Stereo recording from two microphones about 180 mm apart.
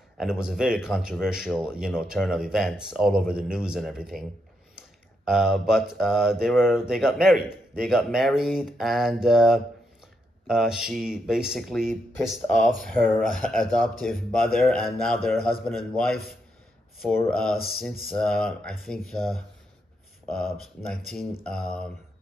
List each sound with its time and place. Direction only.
0.2 s speech: 5° right (ahead or behind)
17.3 s speech: 5° left (ahead or behind)
17.6 s speech: 55° left (ahead or behind)
18.1 s speech: 5° left (ahead or behind)